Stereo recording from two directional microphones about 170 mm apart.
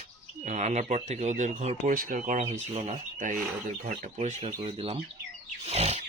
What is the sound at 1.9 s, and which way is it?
Speech, 55° right (ahead or behind).